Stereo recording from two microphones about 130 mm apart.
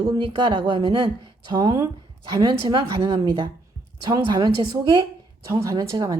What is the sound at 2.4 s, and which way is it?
Speech, 35° right (ahead or behind).